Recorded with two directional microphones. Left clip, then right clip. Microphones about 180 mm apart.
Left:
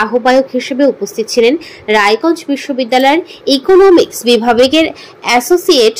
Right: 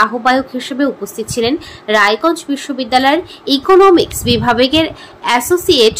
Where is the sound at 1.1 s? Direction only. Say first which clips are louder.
Left 6 dB; 40° right (ahead or behind).